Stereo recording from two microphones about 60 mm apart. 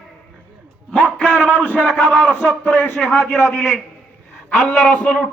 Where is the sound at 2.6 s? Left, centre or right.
Left.